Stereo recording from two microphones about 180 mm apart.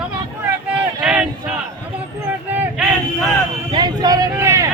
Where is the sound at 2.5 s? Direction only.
5° right (ahead or behind).